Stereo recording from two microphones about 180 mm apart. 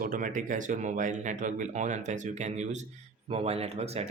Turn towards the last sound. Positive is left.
turn(degrees=-35)  # may be behind; listen again after turning